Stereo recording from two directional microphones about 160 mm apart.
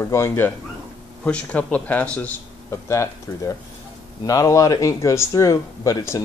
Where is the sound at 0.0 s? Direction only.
15° left (ahead or behind).